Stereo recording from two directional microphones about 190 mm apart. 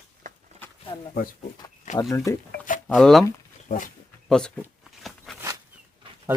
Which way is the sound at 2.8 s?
Centre (ahead or behind).